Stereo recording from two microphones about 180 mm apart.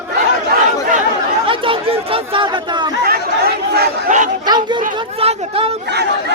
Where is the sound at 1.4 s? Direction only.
30° right (ahead or behind).